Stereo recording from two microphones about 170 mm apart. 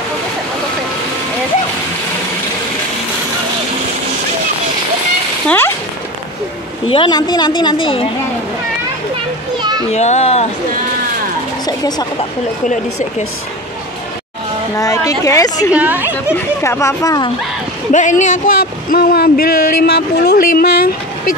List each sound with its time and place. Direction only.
6.9 s a woman's voice: 30° left (ahead or behind)
9.6 s a sound: 25° right (ahead or behind)
9.8 s speech: 40° left (ahead or behind)
11.6 s speech: 25° left (ahead or behind)
14.8 s a woman's voice: 20° left (ahead or behind)
15.7 s a woman's voice: 10° right (ahead or behind)
16.3 s speech: 15° left (ahead or behind)
17.9 s speech: 45° left (ahead or behind)